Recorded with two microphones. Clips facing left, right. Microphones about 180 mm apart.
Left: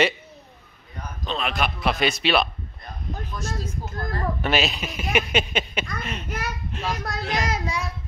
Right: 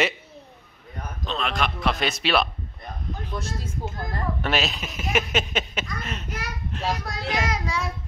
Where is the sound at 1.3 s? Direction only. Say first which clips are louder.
Left 1 dB; 5° left (ahead or behind).